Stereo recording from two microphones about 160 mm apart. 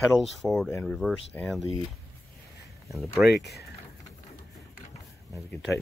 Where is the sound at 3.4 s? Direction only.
90° left.